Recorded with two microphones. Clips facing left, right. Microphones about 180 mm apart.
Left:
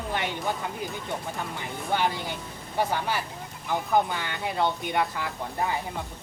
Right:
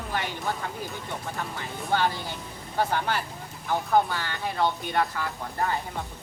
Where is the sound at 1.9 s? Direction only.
15° left (ahead or behind).